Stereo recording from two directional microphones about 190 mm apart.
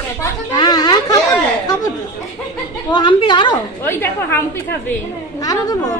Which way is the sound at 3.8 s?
10° left (ahead or behind).